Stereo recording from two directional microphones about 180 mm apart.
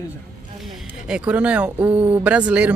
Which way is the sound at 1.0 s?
5° right (ahead or behind).